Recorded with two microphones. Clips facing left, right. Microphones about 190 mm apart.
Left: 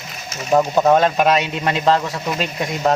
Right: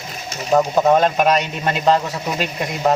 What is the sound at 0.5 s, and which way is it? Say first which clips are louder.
Speech: even; centre (ahead or behind).